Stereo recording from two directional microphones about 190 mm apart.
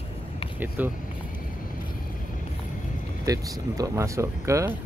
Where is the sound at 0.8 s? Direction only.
10° right (ahead or behind).